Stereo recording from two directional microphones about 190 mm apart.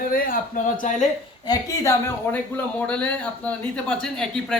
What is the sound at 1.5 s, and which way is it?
A woman's voice, 15° left (ahead or behind).